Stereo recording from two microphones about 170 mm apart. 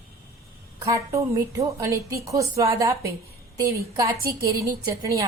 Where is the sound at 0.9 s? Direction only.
20° right (ahead or behind).